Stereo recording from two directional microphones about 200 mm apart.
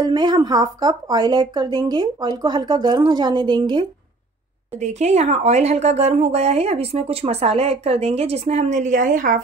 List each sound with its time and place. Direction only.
0.0 s speech: 20° right (ahead or behind)
4.8 s a woman's voice: 35° right (ahead or behind)